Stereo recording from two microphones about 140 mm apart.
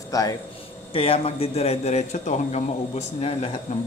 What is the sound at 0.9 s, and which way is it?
A man's voice, 40° left (ahead or behind).